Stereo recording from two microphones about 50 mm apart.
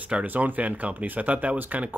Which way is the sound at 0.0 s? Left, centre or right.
Right.